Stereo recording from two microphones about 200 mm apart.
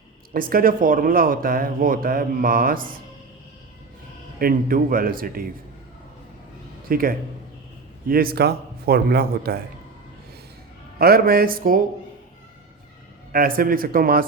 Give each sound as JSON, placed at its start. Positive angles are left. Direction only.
{"t": 0.3, "sound": "speech", "side_deg": -45}
{"t": 4.4, "sound": "speech", "side_deg": -45}
{"t": 6.8, "sound": "speech", "side_deg": -45}
{"t": 10.9, "sound": "speech", "side_deg": -50}
{"t": 13.3, "sound": "speech", "side_deg": -45}